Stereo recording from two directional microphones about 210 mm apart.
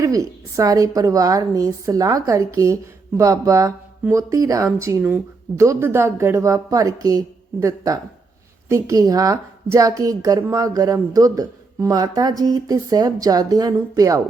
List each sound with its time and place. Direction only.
0.0 s a woman's voice: 15° right (ahead or behind)